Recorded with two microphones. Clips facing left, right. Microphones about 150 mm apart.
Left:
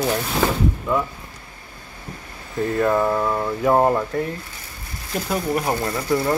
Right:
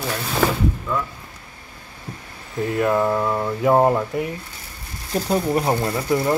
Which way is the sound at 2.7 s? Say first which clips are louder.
Even; 10° right (ahead or behind).